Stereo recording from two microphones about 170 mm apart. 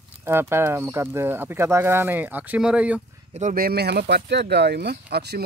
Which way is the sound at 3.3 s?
55° right (ahead or behind).